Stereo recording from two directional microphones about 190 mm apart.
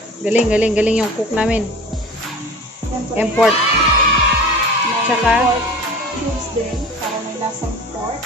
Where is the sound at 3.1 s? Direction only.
5° right (ahead or behind).